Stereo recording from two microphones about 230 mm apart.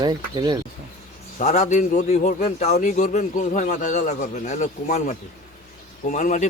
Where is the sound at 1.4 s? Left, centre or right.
Left.